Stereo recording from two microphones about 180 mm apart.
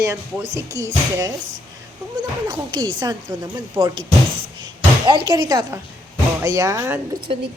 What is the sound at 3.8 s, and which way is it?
Speech, 15° right (ahead or behind).